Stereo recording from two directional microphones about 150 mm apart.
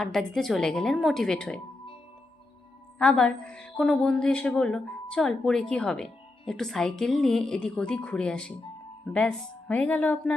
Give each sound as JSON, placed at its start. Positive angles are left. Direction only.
{"t": 0.0, "sound": "a woman's voice", "side_deg": 5}
{"t": 3.0, "sound": "a woman's voice", "side_deg": 5}